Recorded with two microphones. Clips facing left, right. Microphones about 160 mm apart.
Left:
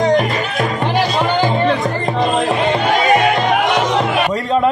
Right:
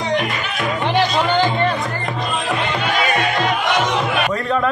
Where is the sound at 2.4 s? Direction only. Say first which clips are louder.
Left 6 dB; 35° left (ahead or behind).